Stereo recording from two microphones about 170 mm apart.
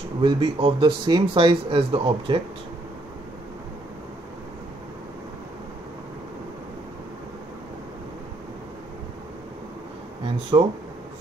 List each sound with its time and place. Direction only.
0.2 s speech: 30° right (ahead or behind)
10.5 s speech: 20° right (ahead or behind)